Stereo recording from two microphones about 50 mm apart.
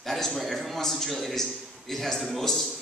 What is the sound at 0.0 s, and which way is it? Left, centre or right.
A man's voice, centre.